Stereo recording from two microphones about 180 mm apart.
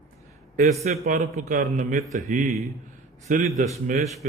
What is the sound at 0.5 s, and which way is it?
A man's voice, 40° right (ahead or behind).